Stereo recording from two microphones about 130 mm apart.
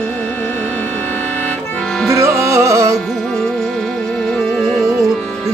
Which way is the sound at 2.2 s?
20° right (ahead or behind).